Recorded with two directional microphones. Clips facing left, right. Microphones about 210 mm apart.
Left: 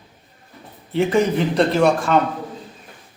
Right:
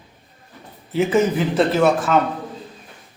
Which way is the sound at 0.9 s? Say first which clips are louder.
Even; 5° right (ahead or behind).